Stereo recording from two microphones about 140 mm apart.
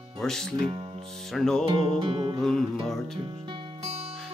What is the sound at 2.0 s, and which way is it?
Music, 40° right (ahead or behind).